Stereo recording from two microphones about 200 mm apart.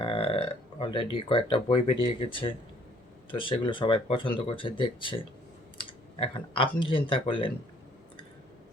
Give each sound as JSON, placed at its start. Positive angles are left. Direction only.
{"t": 0.0, "sound": "speech", "side_deg": 30}